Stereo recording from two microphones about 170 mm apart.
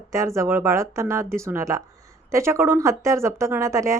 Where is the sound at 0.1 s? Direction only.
15° right (ahead or behind).